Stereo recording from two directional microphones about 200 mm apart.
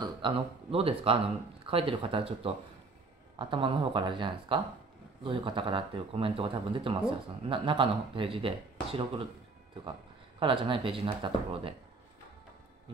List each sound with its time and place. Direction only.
0.0 s speech: 25° right (ahead or behind)
10.4 s speech: 25° right (ahead or behind)